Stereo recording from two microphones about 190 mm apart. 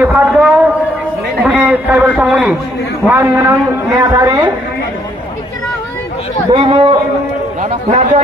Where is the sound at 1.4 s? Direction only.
5° right (ahead or behind).